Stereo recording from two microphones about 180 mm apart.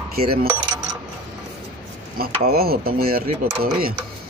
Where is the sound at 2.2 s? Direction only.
55° right (ahead or behind).